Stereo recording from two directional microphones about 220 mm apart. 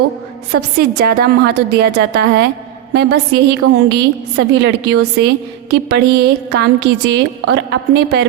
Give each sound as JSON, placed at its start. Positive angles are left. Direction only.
{"t": 0.5, "sound": "a woman's voice", "side_deg": -45}